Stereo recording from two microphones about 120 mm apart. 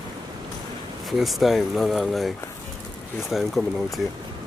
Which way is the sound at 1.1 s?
Centre (ahead or behind).